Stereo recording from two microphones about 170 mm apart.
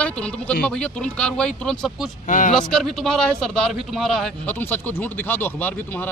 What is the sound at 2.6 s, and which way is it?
A man's voice, centre (ahead or behind).